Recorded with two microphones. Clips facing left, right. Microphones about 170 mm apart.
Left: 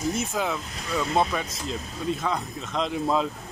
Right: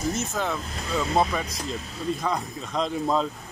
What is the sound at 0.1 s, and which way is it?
Speech, 10° left (ahead or behind).